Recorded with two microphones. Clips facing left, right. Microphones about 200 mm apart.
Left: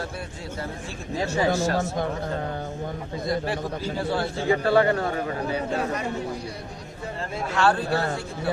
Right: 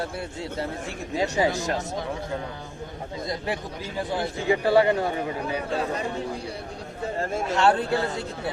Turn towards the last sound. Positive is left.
turn(degrees=-20)  # may be behind; listen again after turning